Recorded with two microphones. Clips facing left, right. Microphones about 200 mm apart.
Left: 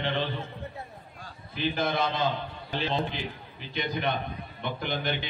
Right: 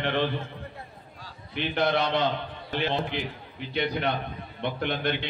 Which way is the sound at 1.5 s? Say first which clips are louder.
Right 3 dB; 65° right (ahead or behind).